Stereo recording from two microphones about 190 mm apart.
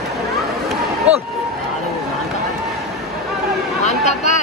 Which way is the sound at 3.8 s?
40° left (ahead or behind).